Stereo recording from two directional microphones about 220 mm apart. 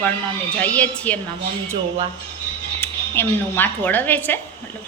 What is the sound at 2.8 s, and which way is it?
A woman's voice, 10° left (ahead or behind).